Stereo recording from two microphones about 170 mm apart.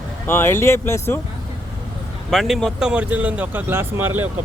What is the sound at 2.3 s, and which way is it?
Speech, centre (ahead or behind).